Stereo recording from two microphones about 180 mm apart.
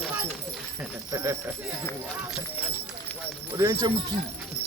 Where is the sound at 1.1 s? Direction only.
20° right (ahead or behind).